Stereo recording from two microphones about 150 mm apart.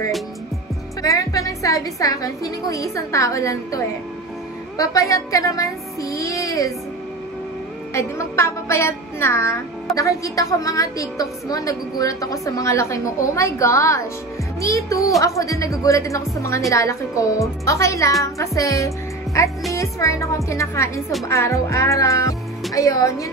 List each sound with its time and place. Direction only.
1.0 s a woman's voice: 20° left (ahead or behind)
7.9 s a woman's voice: 20° left (ahead or behind)